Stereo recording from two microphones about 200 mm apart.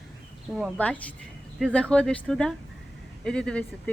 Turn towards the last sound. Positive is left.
turn(degrees=5)  # may be behind; listen again after turning